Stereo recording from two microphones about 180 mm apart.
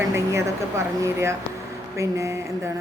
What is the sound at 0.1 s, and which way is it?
A woman's voice, 15° right (ahead or behind).